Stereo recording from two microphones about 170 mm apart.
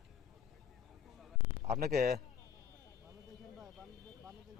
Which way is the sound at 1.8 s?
65° right (ahead or behind).